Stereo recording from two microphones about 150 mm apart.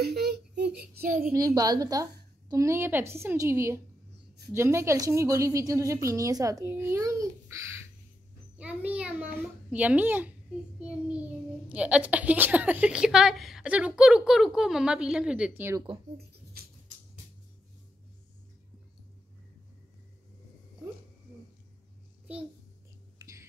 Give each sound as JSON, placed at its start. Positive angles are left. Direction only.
{"t": 0.0, "sound": "a sound", "side_deg": -90}
{"t": 1.0, "sound": "a child's voice", "side_deg": -65}
{"t": 1.3, "sound": "a child's voice", "side_deg": -25}
{"t": 8.5, "sound": "a woman's voice", "side_deg": -10}
{"t": 16.6, "sound": "music", "side_deg": -90}
{"t": 23.1, "sound": "whispering", "side_deg": -20}